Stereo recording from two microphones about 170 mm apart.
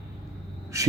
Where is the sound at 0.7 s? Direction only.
20° right (ahead or behind).